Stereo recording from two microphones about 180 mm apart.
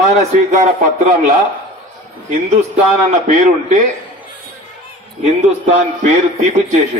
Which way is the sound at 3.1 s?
40° right (ahead or behind).